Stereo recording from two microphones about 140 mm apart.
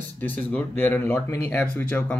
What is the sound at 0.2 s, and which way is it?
Speech, 10° left (ahead or behind).